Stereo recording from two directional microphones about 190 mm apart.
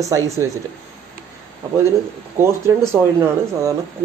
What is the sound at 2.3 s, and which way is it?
A man's voice, 15° right (ahead or behind).